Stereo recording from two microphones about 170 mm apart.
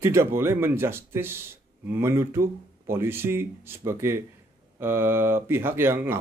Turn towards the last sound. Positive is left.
turn(degrees=-15)  # may be behind; listen again after turning